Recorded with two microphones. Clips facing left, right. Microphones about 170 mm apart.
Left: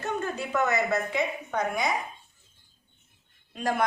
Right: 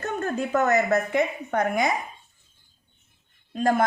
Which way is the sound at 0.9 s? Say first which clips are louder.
Right 5 dB; 55° right (ahead or behind).